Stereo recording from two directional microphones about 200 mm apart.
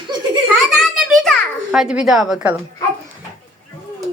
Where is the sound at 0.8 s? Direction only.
Centre (ahead or behind).